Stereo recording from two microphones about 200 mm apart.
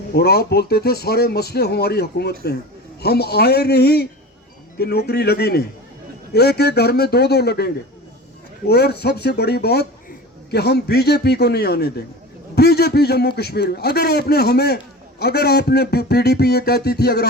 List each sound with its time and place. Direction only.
0.1 s speech: 50° left (ahead or behind)